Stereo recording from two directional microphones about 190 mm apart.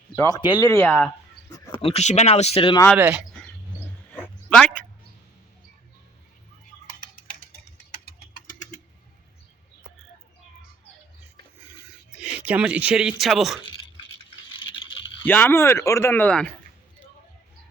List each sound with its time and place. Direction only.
0.2 s speech: 20° left (ahead or behind)
1.5 s a sound: 20° left (ahead or behind)
1.8 s speech: 35° left (ahead or behind)
2.9 s speech: 5° right (ahead or behind)
4.4 s a sound: 5° left (ahead or behind)
6.8 s typing: 50° left (ahead or behind)
7.9 s a sound: 55° left (ahead or behind)
12.1 s speech: 5° right (ahead or behind)
15.2 s speech: 10° left (ahead or behind)